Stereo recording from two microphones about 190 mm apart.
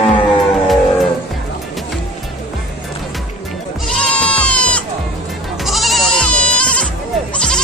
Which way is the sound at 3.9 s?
5° left (ahead or behind).